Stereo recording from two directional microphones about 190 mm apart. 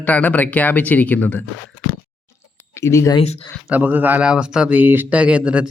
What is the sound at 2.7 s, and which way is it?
Speech, 15° left (ahead or behind).